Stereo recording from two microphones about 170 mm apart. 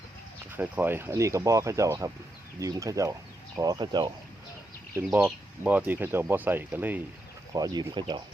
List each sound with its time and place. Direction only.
0.5 s speech: 10° right (ahead or behind)
5.1 s speech: 10° right (ahead or behind)
7.5 s speech: 25° right (ahead or behind)